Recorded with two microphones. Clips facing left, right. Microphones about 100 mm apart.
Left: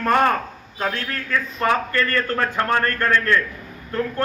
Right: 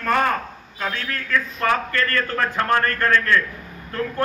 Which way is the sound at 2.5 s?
10° left (ahead or behind).